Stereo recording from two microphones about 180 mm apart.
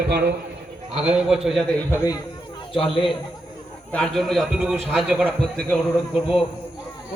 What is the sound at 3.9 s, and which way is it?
A man's voice, 5° left (ahead or behind).